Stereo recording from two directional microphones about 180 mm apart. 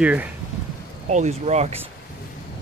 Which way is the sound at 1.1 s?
40° right (ahead or behind).